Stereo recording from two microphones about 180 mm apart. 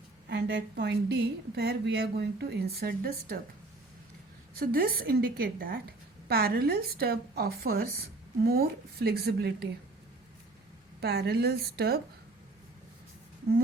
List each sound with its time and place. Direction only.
0.3 s a woman's voice: 75° right (ahead or behind); by 3.4 s 55° right (ahead or behind)
4.6 s a woman's voice: 55° right (ahead or behind)
11.0 s a woman's voice: 60° right (ahead or behind)